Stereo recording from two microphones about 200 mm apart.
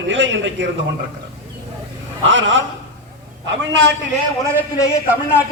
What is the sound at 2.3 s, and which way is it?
Speech, 65° right (ahead or behind).